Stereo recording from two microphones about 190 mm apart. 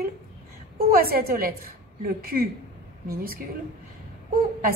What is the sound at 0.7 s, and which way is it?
A woman's voice, 50° right (ahead or behind).